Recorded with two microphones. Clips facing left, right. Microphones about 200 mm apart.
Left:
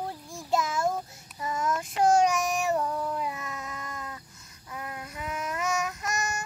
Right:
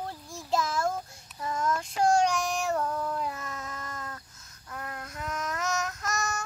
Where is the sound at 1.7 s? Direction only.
Centre (ahead or behind).